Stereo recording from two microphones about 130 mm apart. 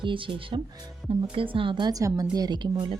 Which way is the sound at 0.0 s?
40° right (ahead or behind).